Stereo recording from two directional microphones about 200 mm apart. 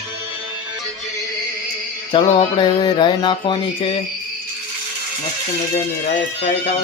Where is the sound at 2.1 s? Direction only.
25° left (ahead or behind).